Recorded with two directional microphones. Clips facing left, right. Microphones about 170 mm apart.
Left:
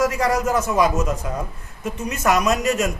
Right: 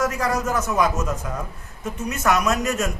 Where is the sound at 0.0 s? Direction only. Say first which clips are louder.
Left 3 dB; 15° left (ahead or behind).